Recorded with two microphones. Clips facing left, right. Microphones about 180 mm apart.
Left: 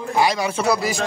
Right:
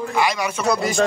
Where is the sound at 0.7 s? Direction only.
5° left (ahead or behind).